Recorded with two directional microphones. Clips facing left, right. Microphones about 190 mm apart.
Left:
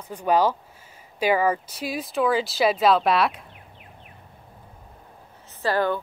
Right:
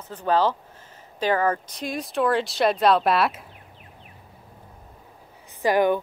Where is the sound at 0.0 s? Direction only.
15° left (ahead or behind).